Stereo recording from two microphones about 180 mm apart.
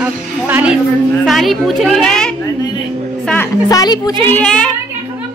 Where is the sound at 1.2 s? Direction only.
Centre (ahead or behind).